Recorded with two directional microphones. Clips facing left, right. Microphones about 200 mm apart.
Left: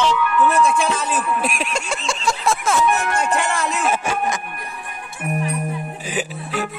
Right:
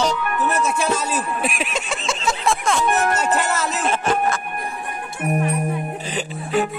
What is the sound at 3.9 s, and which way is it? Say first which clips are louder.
Speech: right 1 dB; 10° left (ahead or behind).